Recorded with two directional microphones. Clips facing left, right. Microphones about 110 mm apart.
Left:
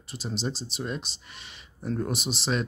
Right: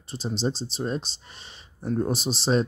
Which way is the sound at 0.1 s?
30° right (ahead or behind).